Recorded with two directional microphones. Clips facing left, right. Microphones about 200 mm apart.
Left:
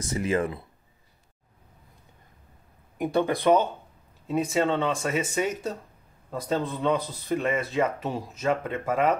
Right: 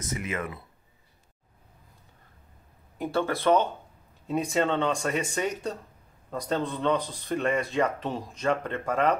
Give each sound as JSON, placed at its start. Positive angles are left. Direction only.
{"t": 0.0, "sound": "speech", "side_deg": 35}
{"t": 3.0, "sound": "speech", "side_deg": 15}
{"t": 4.3, "sound": "speech", "side_deg": 0}